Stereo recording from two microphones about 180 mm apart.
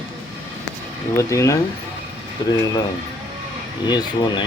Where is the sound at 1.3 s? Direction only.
15° left (ahead or behind).